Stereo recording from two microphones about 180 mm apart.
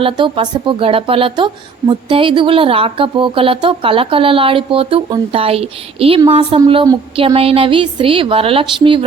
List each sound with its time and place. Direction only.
0.0 s a woman's voice: 25° right (ahead or behind)